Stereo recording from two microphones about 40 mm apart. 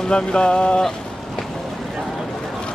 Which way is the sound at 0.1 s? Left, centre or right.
Left.